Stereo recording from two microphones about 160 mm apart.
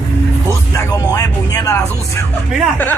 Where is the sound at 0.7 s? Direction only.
25° left (ahead or behind).